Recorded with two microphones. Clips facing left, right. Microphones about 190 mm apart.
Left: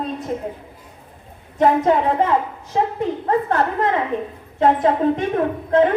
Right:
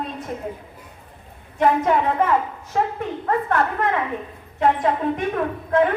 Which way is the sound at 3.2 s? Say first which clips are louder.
Left 1 dB; 30° left (ahead or behind).